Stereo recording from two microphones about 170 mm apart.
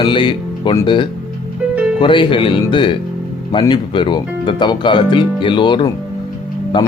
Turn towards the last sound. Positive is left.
turn(degrees=30)  # may be behind; listen again after turning